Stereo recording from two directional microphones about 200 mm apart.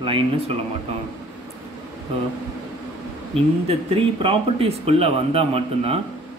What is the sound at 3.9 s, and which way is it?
Speech, 30° right (ahead or behind).